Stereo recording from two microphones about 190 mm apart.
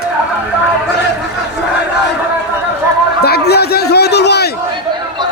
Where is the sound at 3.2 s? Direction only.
55° left (ahead or behind).